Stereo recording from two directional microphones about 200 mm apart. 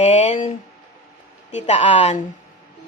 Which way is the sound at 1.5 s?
35° left (ahead or behind).